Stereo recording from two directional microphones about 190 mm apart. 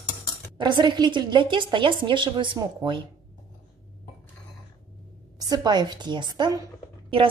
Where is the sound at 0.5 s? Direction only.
25° right (ahead or behind).